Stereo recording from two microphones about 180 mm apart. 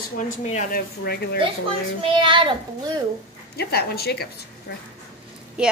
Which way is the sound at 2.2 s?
25° right (ahead or behind).